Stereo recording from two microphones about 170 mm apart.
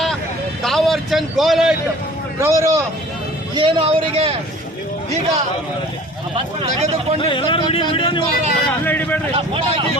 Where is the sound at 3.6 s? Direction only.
30° right (ahead or behind).